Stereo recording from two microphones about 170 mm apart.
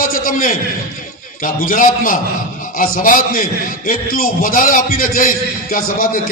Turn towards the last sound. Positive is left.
turn(degrees=55)  # may be behind; listen again after turning